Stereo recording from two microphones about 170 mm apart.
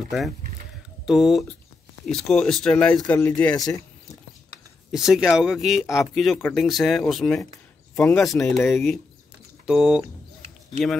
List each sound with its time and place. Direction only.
1.0 s speech: centre (ahead or behind)
3.5 s speech: 20° left (ahead or behind)
4.9 s speech: centre (ahead or behind)
7.9 s speech: 10° left (ahead or behind); by 10.0 s 5° right (ahead or behind)